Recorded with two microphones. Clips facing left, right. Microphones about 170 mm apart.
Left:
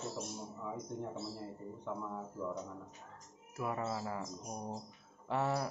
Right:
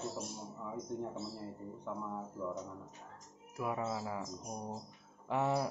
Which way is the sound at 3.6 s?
5° right (ahead or behind).